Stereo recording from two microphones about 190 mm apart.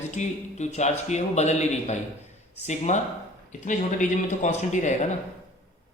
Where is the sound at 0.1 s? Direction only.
35° left (ahead or behind).